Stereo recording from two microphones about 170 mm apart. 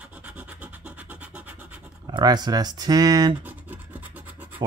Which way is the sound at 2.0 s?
25° right (ahead or behind).